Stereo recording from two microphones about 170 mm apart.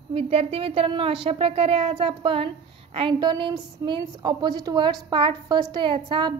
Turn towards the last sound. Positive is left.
turn(degrees=-25)  # may be behind; listen again after turning